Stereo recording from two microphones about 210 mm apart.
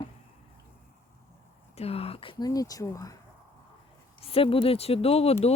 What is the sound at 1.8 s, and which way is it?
A woman's voice, 30° left (ahead or behind).